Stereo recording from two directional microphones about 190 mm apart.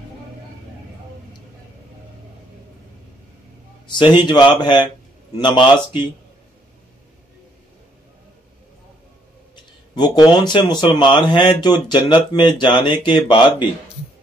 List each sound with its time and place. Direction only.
4.0 s speech: 25° left (ahead or behind)
9.6 s speech: 20° left (ahead or behind)